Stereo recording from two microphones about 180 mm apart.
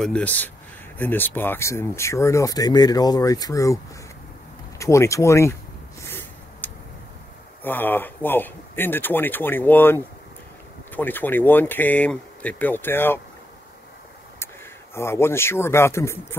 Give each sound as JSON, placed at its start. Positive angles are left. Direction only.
{"t": 0.0, "sound": "speech", "side_deg": 5}
{"t": 6.0, "sound": "a sound", "side_deg": 10}
{"t": 7.6, "sound": "speech", "side_deg": 10}
{"t": 15.0, "sound": "speech", "side_deg": 15}